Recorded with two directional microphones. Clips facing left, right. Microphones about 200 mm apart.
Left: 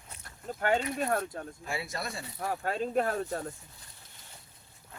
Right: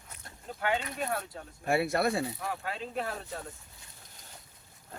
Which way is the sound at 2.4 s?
45° left (ahead or behind).